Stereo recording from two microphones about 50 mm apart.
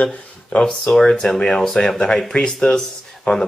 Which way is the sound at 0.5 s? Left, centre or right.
Centre.